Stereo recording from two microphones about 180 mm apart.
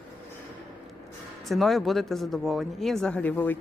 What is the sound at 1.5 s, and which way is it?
A woman's voice, centre (ahead or behind).